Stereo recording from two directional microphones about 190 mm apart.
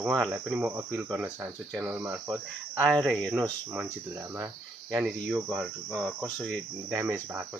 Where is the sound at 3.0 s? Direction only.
5° left (ahead or behind).